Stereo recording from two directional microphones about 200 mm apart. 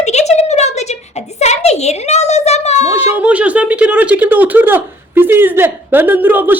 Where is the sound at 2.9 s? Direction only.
10° right (ahead or behind).